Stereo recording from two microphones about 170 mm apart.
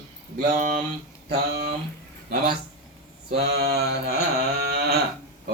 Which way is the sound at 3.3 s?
75° right (ahead or behind).